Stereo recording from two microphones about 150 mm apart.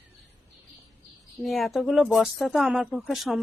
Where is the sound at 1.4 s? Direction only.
Centre (ahead or behind).